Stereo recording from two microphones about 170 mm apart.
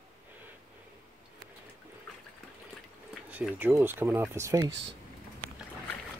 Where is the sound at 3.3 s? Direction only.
10° right (ahead or behind).